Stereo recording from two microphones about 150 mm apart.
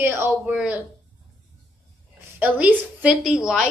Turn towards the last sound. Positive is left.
turn(degrees=-5)  # may be behind; listen again after turning